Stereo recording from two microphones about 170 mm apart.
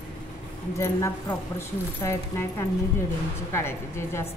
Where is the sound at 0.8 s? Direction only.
15° left (ahead or behind).